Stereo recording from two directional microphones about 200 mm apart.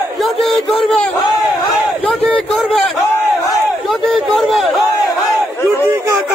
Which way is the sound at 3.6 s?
Centre (ahead or behind).